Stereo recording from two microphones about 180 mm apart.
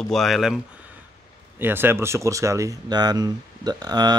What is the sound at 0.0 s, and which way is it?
Speech, centre (ahead or behind).